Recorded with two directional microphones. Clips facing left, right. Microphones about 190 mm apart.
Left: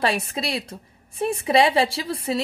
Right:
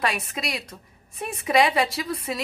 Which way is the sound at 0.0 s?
30° left (ahead or behind).